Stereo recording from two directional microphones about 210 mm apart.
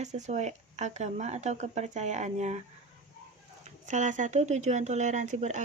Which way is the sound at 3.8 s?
35° right (ahead or behind).